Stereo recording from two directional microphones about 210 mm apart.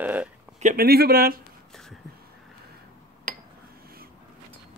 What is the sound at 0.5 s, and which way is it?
Speech, 40° right (ahead or behind).